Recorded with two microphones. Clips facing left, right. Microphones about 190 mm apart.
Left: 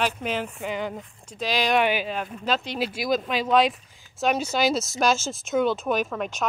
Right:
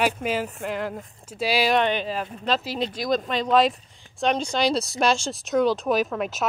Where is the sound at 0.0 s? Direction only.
5° right (ahead or behind).